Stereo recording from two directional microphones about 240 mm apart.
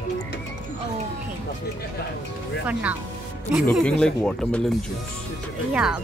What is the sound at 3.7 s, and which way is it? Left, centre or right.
Speech, centre.